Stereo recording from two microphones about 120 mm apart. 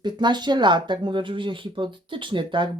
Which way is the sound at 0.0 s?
40° right (ahead or behind).